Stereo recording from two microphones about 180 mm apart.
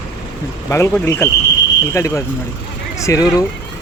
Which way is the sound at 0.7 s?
15° left (ahead or behind).